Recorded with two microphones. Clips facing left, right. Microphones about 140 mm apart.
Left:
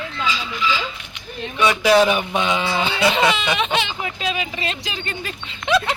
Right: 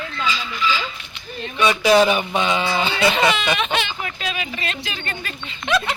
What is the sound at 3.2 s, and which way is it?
Speech, 10° right (ahead or behind).